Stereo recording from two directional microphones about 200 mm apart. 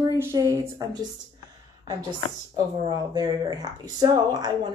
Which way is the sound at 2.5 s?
20° right (ahead or behind).